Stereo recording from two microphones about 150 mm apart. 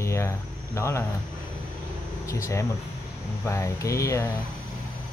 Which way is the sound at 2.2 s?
20° left (ahead or behind).